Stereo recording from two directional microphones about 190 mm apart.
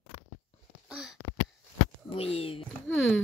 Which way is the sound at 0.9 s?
5° right (ahead or behind).